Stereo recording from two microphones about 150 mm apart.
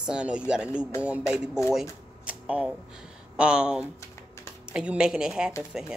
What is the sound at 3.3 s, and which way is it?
Speech, 5° right (ahead or behind).